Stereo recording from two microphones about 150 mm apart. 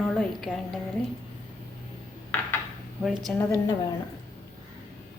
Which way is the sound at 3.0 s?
Centre (ahead or behind).